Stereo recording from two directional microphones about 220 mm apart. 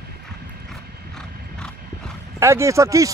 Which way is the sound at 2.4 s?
10° right (ahead or behind).